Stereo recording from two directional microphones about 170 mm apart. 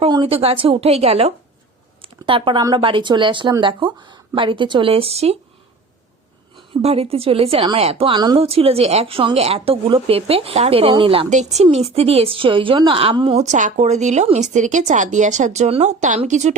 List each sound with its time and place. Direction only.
0.0 s a woman's voice: 35° right (ahead or behind)
6.8 s a woman's voice: 35° right (ahead or behind)